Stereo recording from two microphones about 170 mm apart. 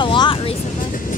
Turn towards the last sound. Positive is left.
turn(degrees=30)  # may be behind; listen again after turning